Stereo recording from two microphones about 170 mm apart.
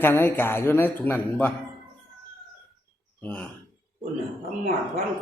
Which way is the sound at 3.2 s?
10° left (ahead or behind).